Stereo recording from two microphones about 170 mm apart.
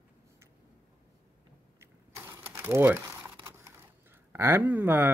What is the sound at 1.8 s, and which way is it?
Crumpling, 15° right (ahead or behind).